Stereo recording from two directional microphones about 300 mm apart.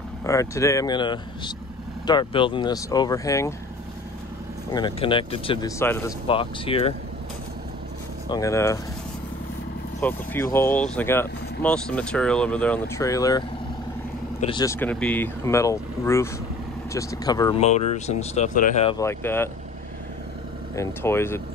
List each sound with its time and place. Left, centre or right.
0.2 s speech: centre
4.7 s speech: centre
8.3 s speech: centre
9.9 s speech: centre
14.4 s speech: centre
20.7 s speech: centre